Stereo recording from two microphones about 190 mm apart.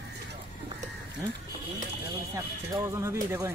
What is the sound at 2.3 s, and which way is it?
Speech, 15° right (ahead or behind).